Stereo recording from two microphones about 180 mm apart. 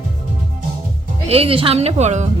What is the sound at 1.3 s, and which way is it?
A woman's voice, 30° right (ahead or behind).